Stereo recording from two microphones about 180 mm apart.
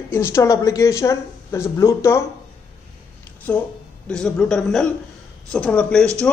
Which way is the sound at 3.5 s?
10° left (ahead or behind).